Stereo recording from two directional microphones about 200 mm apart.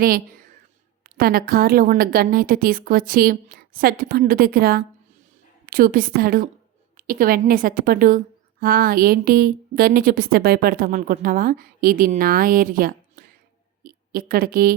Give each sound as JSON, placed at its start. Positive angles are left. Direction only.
{"t": 0.0, "sound": "a woman's voice", "side_deg": -45}